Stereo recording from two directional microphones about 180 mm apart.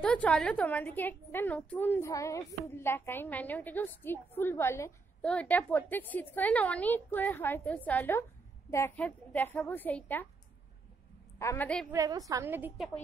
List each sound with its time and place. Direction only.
0.0 s a woman's voice: 5° left (ahead or behind)
11.3 s a woman's voice: 15° left (ahead or behind)
11.9 s a woman's voice: 20° right (ahead or behind)